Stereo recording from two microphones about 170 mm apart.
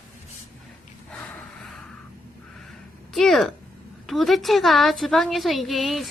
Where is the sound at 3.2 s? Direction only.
Centre (ahead or behind).